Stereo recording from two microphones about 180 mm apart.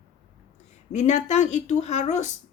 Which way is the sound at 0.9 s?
40° left (ahead or behind).